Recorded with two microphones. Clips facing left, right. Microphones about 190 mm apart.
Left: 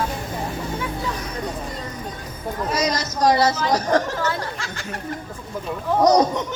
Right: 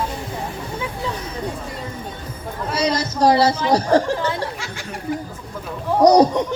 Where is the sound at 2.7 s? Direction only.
30° right (ahead or behind).